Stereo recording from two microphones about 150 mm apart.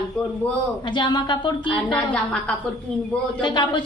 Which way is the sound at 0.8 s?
30° left (ahead or behind).